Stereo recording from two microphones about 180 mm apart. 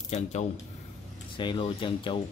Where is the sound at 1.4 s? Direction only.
25° left (ahead or behind).